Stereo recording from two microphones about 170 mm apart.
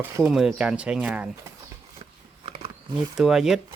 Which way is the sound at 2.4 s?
30° right (ahead or behind).